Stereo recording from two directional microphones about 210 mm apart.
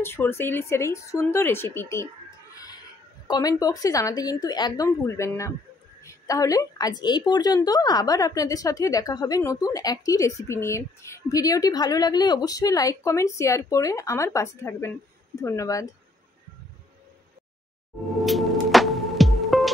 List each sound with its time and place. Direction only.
0.0 s a woman's voice: 10° left (ahead or behind)
2.5 s a sound: 15° left (ahead or behind)
3.3 s a woman's voice: 15° left (ahead or behind)
18.1 s music: centre (ahead or behind)